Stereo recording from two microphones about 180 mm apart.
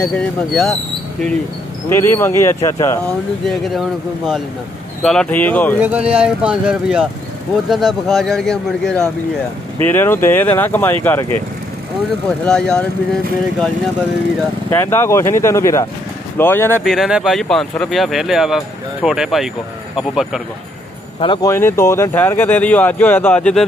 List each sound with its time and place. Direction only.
0.0 s speech: 5° left (ahead or behind)
1.9 s speech: 15° left (ahead or behind)
3.4 s speech: centre (ahead or behind)
5.0 s speech: 5° left (ahead or behind)
5.8 s speech: 10° right (ahead or behind); by 11.2 s 10° left (ahead or behind)
12.4 s speech: 5° left (ahead or behind)
14.7 s speech: 15° left (ahead or behind)
16.8 s speech: centre (ahead or behind)
21.2 s speech: 25° left (ahead or behind); by 23.6 s 5° left (ahead or behind)